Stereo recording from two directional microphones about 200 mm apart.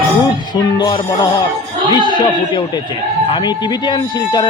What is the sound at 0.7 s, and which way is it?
Speech, 20° left (ahead or behind).